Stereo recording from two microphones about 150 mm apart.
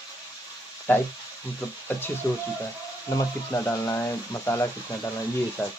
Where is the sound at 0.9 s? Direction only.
10° left (ahead or behind).